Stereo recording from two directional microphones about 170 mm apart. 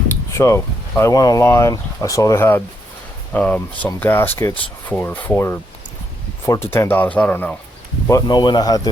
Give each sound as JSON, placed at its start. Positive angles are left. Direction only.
{"t": 0.3, "sound": "speech", "side_deg": 15}
{"t": 6.7, "sound": "speech", "side_deg": 15}
{"t": 8.0, "sound": "speech", "side_deg": 20}